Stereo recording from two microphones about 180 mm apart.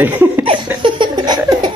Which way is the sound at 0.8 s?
25° right (ahead or behind).